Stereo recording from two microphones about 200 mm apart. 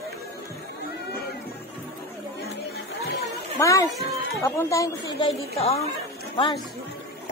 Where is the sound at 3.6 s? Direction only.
15° left (ahead or behind).